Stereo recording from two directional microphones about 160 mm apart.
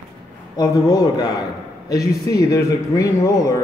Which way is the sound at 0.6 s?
25° left (ahead or behind).